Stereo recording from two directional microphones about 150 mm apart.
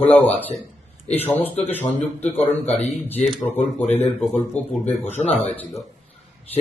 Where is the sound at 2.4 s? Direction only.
45° left (ahead or behind).